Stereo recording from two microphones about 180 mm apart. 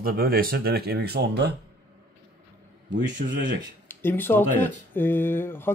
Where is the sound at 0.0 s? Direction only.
55° right (ahead or behind).